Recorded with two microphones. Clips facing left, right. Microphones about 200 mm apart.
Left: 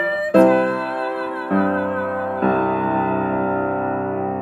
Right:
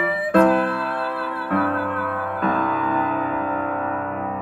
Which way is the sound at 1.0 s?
25° left (ahead or behind).